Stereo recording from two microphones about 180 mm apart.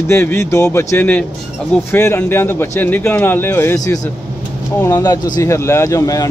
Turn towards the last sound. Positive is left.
turn(degrees=20)  # may be behind; listen again after turning